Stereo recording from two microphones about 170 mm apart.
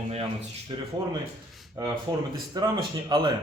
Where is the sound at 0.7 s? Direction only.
30° right (ahead or behind).